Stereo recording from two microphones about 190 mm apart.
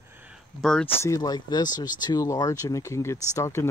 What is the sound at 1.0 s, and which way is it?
Speech, 20° left (ahead or behind).